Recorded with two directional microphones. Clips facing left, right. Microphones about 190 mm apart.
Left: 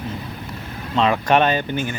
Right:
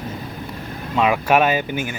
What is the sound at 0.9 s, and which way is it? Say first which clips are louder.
Speech: even; 10° right (ahead or behind).